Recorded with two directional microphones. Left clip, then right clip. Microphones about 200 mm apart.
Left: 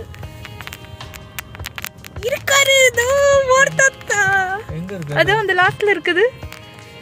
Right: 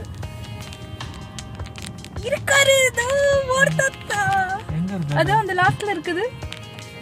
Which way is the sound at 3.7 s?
20° left (ahead or behind).